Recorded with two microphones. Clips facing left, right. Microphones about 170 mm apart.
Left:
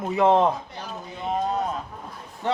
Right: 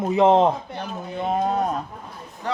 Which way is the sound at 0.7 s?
55° right (ahead or behind).